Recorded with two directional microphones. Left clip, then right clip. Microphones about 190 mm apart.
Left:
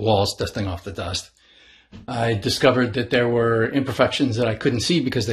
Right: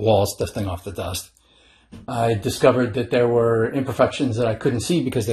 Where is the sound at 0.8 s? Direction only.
45° left (ahead or behind).